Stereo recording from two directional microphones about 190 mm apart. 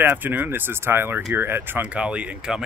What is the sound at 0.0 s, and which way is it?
Speech, 10° right (ahead or behind).